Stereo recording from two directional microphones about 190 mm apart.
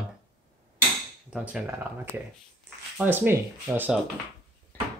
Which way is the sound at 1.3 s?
5° right (ahead or behind).